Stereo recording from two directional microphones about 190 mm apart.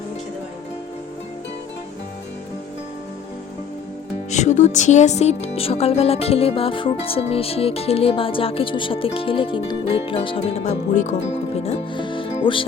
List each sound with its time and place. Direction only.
4.3 s speech: 40° left (ahead or behind)